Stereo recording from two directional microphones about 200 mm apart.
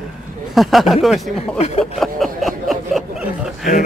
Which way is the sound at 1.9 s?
Centre (ahead or behind).